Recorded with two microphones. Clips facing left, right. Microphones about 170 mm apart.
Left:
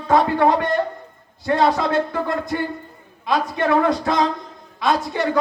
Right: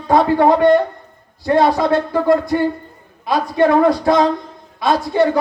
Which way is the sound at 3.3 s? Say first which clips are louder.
Right 5 dB; 20° right (ahead or behind).